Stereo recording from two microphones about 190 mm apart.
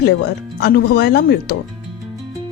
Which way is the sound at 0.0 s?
60° left (ahead or behind).